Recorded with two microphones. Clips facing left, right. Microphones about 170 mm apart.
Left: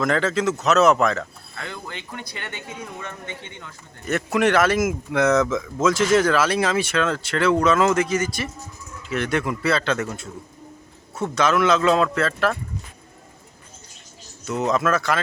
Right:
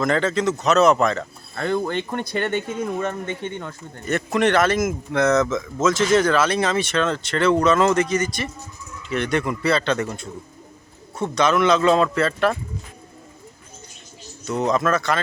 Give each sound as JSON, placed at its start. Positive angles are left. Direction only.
{"t": 0.0, "sound": "a man's voice", "side_deg": 0}
{"t": 1.5, "sound": "speech", "side_deg": -55}
{"t": 4.0, "sound": "a man's voice", "side_deg": 5}
{"t": 14.7, "sound": "a man's voice", "side_deg": 5}